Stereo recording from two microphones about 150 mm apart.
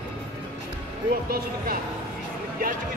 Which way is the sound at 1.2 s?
85° right.